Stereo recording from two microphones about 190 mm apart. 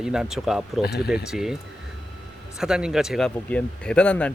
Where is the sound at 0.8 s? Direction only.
55° left (ahead or behind).